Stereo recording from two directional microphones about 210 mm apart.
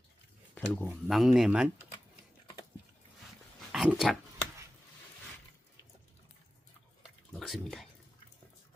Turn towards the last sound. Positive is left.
turn(degrees=0)  # may be behind; listen again after turning